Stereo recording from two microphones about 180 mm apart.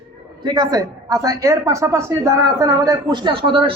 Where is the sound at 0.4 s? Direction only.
20° right (ahead or behind).